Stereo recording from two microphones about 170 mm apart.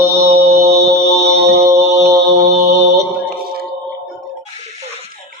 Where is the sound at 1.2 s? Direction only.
75° right (ahead or behind).